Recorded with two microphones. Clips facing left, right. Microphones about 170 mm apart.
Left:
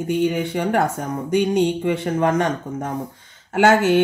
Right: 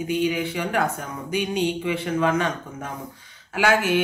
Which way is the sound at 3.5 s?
55° left (ahead or behind).